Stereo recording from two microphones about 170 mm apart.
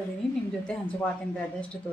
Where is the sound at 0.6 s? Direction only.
5° left (ahead or behind).